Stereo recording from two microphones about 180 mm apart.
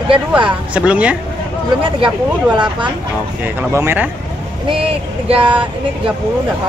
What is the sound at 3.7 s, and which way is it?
Speech, 15° right (ahead or behind).